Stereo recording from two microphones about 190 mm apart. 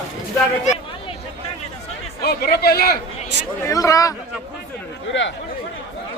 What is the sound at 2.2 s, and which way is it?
Speech, 55° left (ahead or behind).